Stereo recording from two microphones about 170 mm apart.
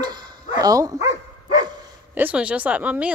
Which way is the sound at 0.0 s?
25° right (ahead or behind).